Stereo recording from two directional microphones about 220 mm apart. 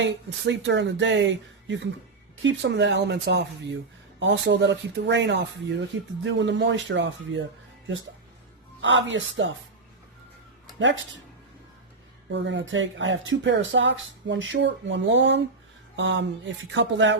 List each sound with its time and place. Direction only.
0.0 s speech: 55° right (ahead or behind)
8.8 s speech: 55° right (ahead or behind)
12.3 s speech: 55° right (ahead or behind)